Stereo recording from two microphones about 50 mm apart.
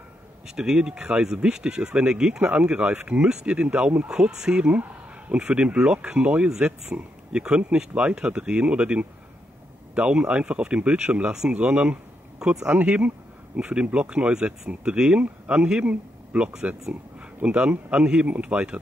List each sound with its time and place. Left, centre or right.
0.6 s speech: centre
4.1 s speech: centre
12.6 s speech: right